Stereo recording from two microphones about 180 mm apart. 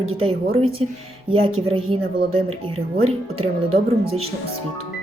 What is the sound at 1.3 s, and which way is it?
Speech, 30° right (ahead or behind).